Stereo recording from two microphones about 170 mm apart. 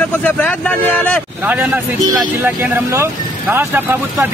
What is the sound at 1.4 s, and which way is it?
Speech, 10° right (ahead or behind).